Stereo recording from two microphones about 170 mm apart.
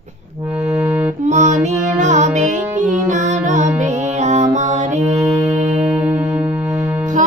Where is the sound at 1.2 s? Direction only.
45° right (ahead or behind).